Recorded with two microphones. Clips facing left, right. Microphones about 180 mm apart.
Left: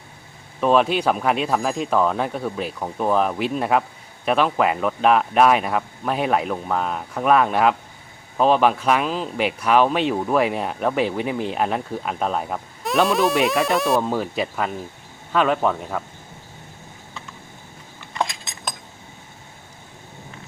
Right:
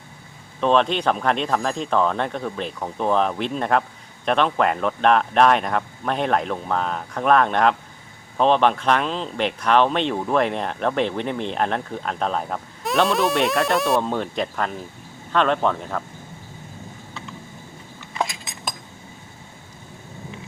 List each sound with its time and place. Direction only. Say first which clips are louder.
0.6 s speech: left 1 dB; 5° left (ahead or behind)
18.1 s cutlery: left 1 dB; 5° right (ahead or behind)